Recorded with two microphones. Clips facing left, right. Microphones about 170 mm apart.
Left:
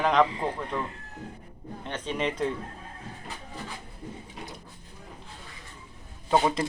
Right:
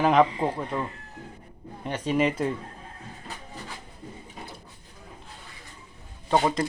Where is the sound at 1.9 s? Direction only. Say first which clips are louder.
Right 6 dB; 10° right (ahead or behind).